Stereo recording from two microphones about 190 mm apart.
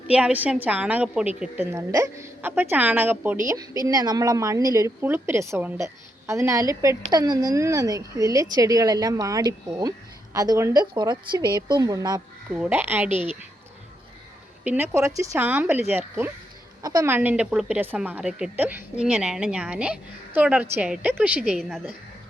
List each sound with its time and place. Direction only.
0.1 s a woman's voice: 5° right (ahead or behind)
12.5 s a woman's voice: 5° right (ahead or behind)
14.6 s a woman's voice: 10° right (ahead or behind)